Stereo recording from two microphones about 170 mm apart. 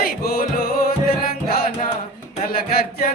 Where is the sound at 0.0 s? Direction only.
60° left (ahead or behind).